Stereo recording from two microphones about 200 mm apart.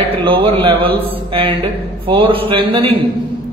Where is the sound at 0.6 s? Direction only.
25° right (ahead or behind).